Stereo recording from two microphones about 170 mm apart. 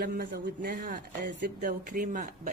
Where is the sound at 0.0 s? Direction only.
70° right (ahead or behind).